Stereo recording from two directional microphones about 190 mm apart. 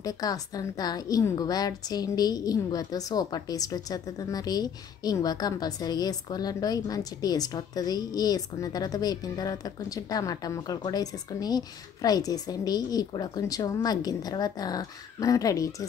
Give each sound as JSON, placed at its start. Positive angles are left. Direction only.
{"t": 0.0, "sound": "a woman's voice", "side_deg": 20}